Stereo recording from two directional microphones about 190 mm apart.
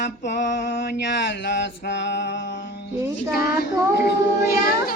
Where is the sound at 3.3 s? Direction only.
55° left (ahead or behind).